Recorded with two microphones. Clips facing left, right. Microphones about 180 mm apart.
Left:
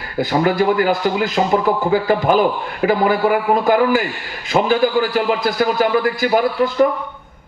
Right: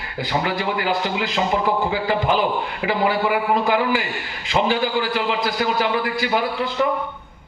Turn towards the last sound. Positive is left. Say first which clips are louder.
# left 7 dB
turn(degrees=45)  # may be behind; listen again after turning